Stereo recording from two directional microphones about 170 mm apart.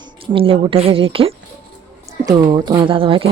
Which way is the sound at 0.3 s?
30° right (ahead or behind).